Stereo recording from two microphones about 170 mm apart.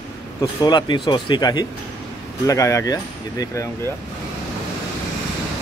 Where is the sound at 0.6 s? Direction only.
25° left (ahead or behind).